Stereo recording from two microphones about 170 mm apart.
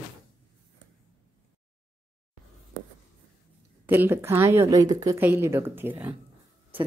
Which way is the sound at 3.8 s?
10° right (ahead or behind).